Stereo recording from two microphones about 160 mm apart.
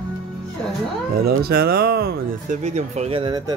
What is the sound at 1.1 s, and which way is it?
Speech, 70° right (ahead or behind).